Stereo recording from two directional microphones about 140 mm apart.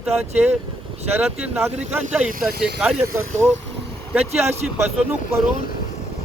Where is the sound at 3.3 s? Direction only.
15° right (ahead or behind).